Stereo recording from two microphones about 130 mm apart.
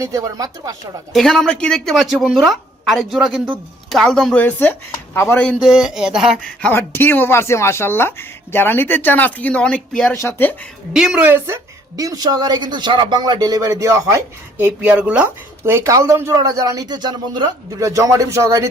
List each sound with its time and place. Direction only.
0.0 s a woman's voice: 25° right (ahead or behind)
1.1 s a woman's voice: 5° left (ahead or behind); by 5.5 s 20° left (ahead or behind)
5.5 s a woman's voice: centre (ahead or behind)
6.4 s speech: 10° left (ahead or behind)
10.2 s speech: 20° left (ahead or behind)
10.9 s a woman's voice: 5° right (ahead or behind); by 14.7 s 25° right (ahead or behind)
14.8 s a woman's voice: 10° right (ahead or behind); by 18.7 s 25° right (ahead or behind)